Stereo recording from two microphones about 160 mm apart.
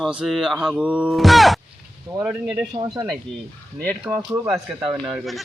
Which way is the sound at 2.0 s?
15° right (ahead or behind).